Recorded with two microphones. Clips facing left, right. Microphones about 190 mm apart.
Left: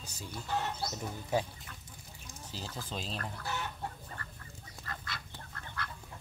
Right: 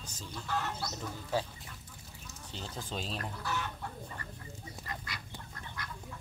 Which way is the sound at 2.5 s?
Centre (ahead or behind).